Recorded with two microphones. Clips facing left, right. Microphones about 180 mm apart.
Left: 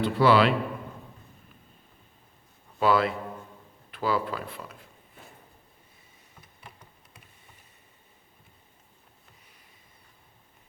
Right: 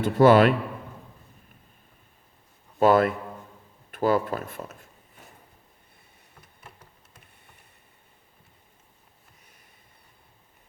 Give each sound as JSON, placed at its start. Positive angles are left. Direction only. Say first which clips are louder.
{"t": 0.0, "sound": "a man's voice", "louder": "right 4 dB", "side_deg": -45}
{"t": 2.7, "sound": "a man's voice", "louder": "right 4 dB", "side_deg": -50}